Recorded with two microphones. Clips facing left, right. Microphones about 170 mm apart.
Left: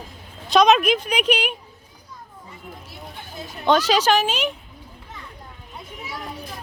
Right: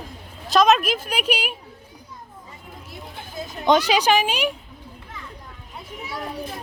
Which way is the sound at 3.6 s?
15° right (ahead or behind).